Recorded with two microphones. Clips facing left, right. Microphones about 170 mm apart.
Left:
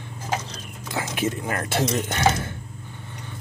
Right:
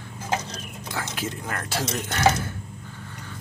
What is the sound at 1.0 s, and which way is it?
Speech, 20° left (ahead or behind).